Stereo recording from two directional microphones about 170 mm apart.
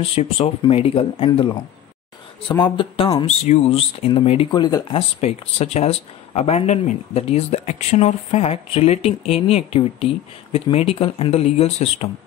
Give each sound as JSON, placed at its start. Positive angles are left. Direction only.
{"t": 0.0, "sound": "speech", "side_deg": 35}
{"t": 4.5, "sound": "speech", "side_deg": 25}
{"t": 5.2, "sound": "speech", "side_deg": 40}